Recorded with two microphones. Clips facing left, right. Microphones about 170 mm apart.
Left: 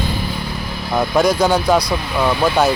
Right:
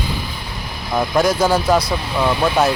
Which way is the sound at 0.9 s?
Centre (ahead or behind).